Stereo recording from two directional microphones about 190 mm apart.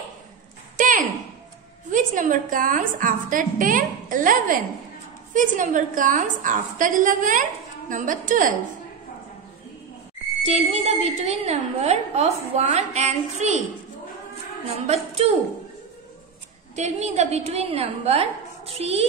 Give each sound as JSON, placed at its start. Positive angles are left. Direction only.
{"t": 0.7, "sound": "a sound", "side_deg": -45}
{"t": 1.9, "sound": "a woman's voice", "side_deg": -45}
{"t": 10.4, "sound": "a woman's voice", "side_deg": -35}
{"t": 14.9, "sound": "a woman's voice", "side_deg": -35}
{"t": 16.7, "sound": "a woman's voice", "side_deg": -35}